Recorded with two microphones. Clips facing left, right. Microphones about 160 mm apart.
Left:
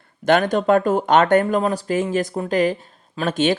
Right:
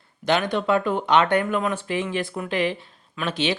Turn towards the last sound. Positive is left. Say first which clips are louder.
# left 6 dB
turn(degrees=45)  # may be behind; listen again after turning